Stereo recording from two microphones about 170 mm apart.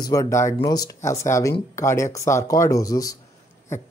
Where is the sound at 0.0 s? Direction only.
20° left (ahead or behind).